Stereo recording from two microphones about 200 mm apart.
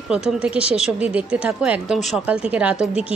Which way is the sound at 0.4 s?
5° right (ahead or behind).